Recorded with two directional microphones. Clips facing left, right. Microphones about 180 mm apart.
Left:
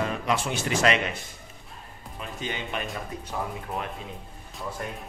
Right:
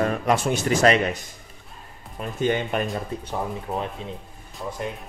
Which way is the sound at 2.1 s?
50° right (ahead or behind).